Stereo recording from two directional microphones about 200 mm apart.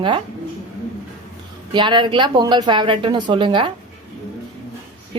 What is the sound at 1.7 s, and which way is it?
Speech, 25° right (ahead or behind).